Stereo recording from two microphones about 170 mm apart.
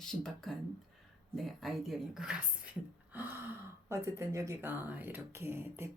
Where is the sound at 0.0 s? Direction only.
Centre (ahead or behind).